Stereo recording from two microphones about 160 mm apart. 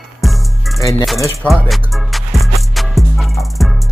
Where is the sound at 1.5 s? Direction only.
Centre (ahead or behind).